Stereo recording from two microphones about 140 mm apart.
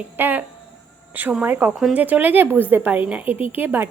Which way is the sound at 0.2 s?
15° right (ahead or behind).